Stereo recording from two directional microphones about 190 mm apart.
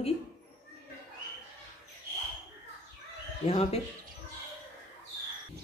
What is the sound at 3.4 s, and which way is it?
Speech, 30° left (ahead or behind).